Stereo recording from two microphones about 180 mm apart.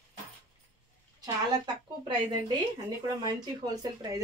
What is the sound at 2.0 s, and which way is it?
Speech, 25° right (ahead or behind).